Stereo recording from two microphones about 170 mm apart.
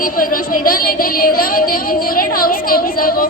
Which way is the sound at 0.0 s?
55° left (ahead or behind).